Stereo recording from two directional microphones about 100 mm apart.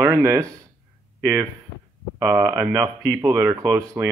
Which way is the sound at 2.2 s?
35° right (ahead or behind).